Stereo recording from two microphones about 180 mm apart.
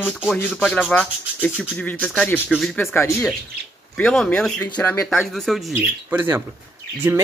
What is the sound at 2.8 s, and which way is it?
Speech, 10° left (ahead or behind).